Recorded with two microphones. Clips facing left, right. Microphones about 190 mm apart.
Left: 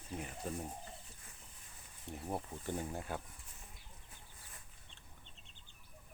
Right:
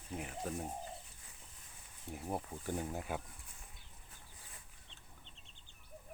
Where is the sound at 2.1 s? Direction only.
5° right (ahead or behind).